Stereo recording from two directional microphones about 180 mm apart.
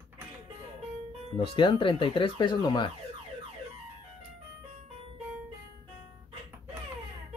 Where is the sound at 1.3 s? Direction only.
30° left (ahead or behind).